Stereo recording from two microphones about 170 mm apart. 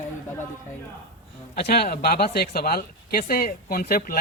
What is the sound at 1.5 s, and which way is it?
Speech, 70° left (ahead or behind).